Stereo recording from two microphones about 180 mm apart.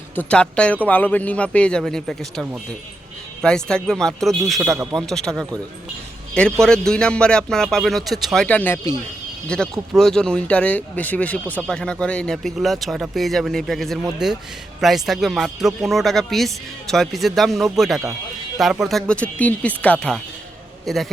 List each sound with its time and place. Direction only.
0.2 s speech: 5° left (ahead or behind)
4.7 s a man's voice: 15° right (ahead or behind)
4.9 s a man's voice: 5° left (ahead or behind)